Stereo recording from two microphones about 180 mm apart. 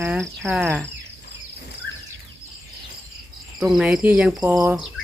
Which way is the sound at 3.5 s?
5° right (ahead or behind).